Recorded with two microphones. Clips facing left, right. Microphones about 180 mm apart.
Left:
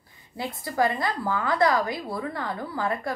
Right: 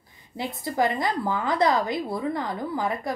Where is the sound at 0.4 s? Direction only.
20° right (ahead or behind).